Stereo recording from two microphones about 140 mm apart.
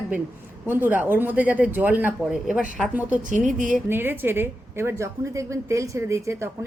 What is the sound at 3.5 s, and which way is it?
Speech, 65° right (ahead or behind).